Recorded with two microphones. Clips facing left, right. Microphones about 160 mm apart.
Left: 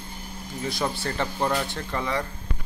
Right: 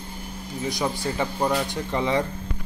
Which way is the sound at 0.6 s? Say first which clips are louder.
Right 2 dB; 15° right (ahead or behind).